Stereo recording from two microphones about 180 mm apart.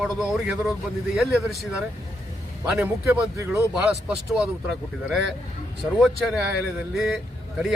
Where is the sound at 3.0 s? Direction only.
15° right (ahead or behind).